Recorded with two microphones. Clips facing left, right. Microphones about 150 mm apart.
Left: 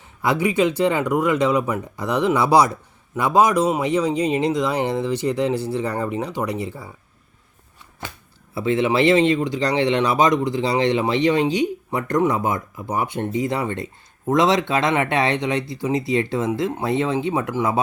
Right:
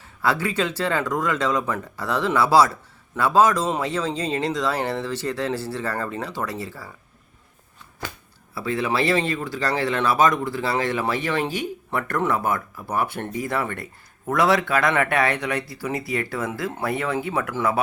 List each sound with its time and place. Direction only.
0.2 s speech: 15° left (ahead or behind)
8.0 s speech: 20° left (ahead or behind)